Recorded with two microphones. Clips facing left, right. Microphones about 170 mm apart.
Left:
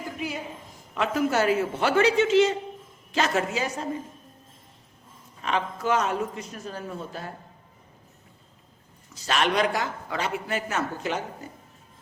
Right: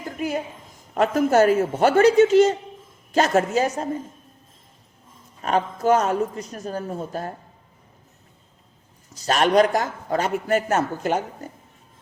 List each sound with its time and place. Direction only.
0.2 s a woman's voice: 45° right (ahead or behind)
5.4 s a man's voice: 45° right (ahead or behind)
9.1 s a man's voice: 40° right (ahead or behind)